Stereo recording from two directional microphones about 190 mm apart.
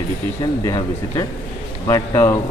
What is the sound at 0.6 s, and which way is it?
Speech, 15° left (ahead or behind).